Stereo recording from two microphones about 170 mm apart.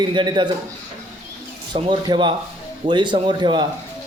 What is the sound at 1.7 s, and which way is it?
A man's voice, 30° right (ahead or behind).